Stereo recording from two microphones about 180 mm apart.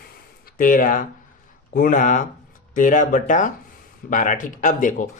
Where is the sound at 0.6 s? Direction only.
50° left (ahead or behind).